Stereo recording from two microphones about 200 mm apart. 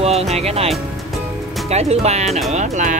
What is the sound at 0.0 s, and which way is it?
Speech, 30° right (ahead or behind).